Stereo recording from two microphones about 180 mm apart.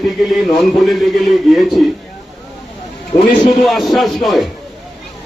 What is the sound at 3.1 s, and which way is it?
Speech, 15° left (ahead or behind).